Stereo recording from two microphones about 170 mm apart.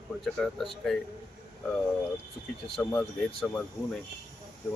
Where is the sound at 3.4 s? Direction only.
Centre (ahead or behind).